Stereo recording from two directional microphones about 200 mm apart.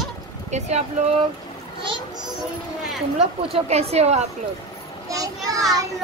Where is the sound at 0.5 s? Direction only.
35° right (ahead or behind).